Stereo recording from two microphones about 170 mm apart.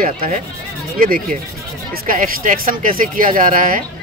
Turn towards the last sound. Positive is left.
turn(degrees=-55)  # may be behind; listen again after turning